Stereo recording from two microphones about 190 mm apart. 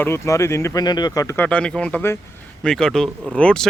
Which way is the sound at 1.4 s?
5° left (ahead or behind).